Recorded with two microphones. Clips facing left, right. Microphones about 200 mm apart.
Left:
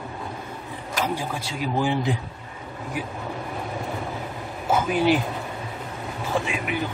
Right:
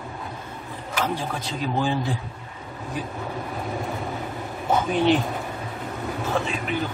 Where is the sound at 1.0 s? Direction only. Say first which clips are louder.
Even; 10° left (ahead or behind).